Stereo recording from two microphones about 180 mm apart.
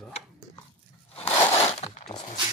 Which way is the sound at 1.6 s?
35° left (ahead or behind).